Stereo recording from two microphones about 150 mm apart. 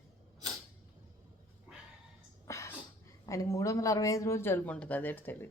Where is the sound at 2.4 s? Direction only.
20° left (ahead or behind).